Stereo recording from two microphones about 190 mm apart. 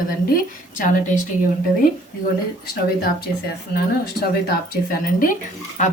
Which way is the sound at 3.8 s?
55° left (ahead or behind).